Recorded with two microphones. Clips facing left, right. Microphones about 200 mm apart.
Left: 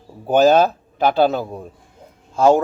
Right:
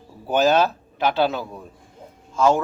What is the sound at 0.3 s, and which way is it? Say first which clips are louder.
Speech: left 5 dB; 45° left (ahead or behind).